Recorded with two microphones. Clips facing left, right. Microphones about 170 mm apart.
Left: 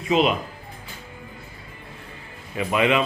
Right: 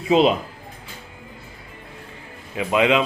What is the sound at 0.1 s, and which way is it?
Speech, 30° right (ahead or behind).